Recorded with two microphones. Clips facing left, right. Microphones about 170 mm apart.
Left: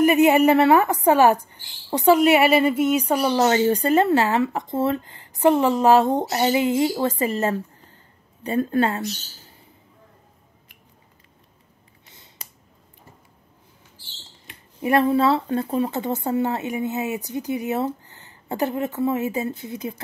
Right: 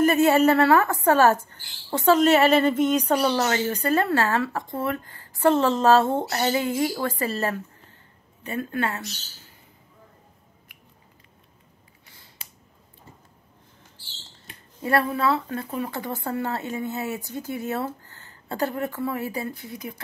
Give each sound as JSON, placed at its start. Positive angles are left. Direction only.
{"t": 0.0, "sound": "a woman's voice", "side_deg": 15}
{"t": 3.3, "sound": "speech", "side_deg": 25}
{"t": 8.5, "sound": "speech", "side_deg": 30}
{"t": 14.8, "sound": "speech", "side_deg": 20}